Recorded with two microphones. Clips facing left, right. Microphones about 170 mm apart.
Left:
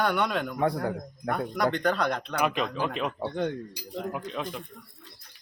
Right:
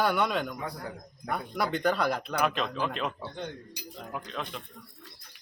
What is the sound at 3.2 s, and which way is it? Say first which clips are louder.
Speech: left 9 dB; 70° left (ahead or behind).